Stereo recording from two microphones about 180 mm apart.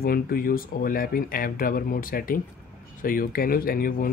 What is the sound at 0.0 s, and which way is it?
Speech, 55° left (ahead or behind).